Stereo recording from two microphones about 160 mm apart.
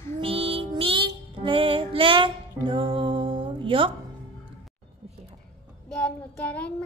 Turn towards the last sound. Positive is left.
turn(degrees=10)  # may be behind; listen again after turning